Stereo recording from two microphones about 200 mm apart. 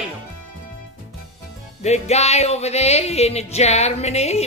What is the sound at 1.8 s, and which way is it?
Music, 35° left (ahead or behind).